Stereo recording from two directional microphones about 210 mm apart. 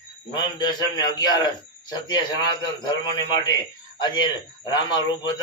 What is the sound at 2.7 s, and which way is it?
A man's voice, 20° left (ahead or behind).